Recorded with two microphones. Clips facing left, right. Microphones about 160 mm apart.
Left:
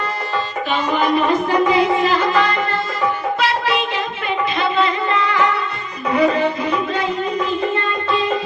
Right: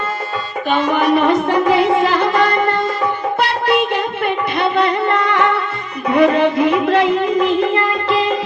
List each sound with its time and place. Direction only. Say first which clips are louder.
0.7 s music: right 4 dB; 60° right (ahead or behind); by 7.9 s 85° right